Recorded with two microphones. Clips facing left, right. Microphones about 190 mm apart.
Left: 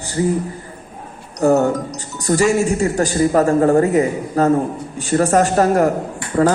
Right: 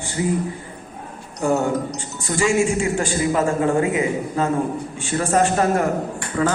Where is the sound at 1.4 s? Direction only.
40° left (ahead or behind).